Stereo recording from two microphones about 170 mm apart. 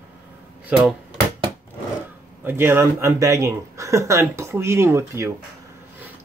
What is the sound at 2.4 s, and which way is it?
Speech, 15° right (ahead or behind).